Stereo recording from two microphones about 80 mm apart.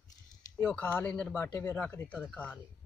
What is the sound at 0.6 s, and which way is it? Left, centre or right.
Speech, left.